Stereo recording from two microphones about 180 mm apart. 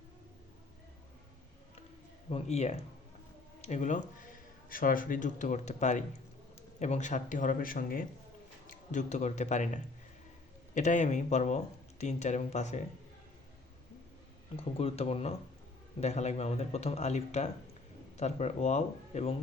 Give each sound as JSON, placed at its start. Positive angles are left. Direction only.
{"t": 2.3, "sound": "speech", "side_deg": 35}
{"t": 14.5, "sound": "speech", "side_deg": 35}